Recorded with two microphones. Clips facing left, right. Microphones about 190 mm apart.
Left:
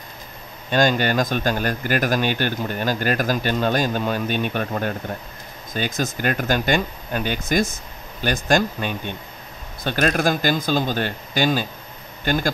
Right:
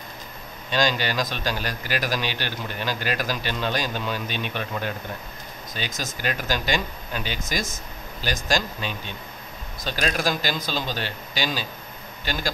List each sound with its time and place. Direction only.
0.7 s a man's voice: 50° left (ahead or behind)